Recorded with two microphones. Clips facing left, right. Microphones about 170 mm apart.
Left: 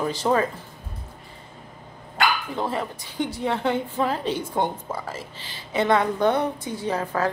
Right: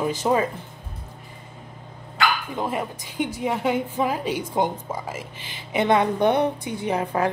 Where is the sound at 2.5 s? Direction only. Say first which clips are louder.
Even; 15° right (ahead or behind).